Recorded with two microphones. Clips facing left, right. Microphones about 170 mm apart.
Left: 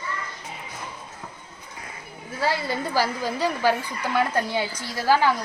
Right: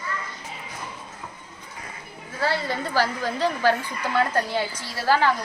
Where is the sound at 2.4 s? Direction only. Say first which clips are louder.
Even; 15° left (ahead or behind).